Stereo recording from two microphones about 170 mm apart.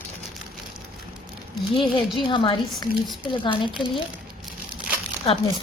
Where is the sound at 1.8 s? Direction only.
30° left (ahead or behind).